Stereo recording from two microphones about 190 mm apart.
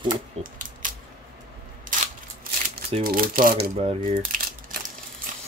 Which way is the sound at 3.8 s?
30° right (ahead or behind).